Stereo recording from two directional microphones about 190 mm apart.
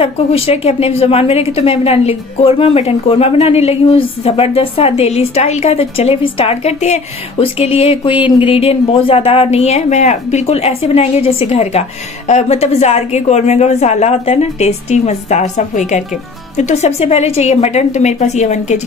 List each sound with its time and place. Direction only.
0.0 s a woman's voice: 30° left (ahead or behind)